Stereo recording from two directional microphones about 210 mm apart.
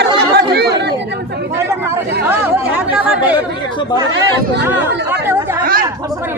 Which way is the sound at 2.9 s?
5° right (ahead or behind).